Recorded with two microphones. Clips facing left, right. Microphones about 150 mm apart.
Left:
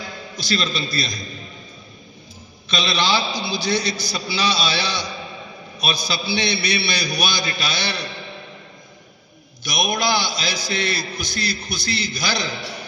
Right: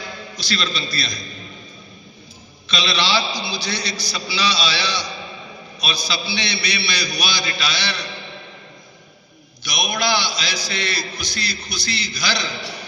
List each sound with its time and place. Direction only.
0.5 s a man's voice: 45° left (ahead or behind)
2.6 s a man's voice: 50° left (ahead or behind)
9.6 s a man's voice: 50° left (ahead or behind)